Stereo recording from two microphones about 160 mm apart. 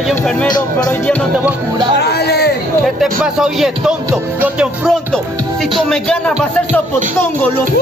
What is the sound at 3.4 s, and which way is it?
Speech, centre (ahead or behind).